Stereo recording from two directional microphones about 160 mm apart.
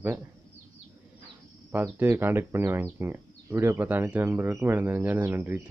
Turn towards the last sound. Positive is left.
turn(degrees=-10)  # may be behind; listen again after turning